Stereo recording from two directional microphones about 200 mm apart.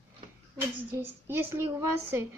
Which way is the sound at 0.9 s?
10° right (ahead or behind).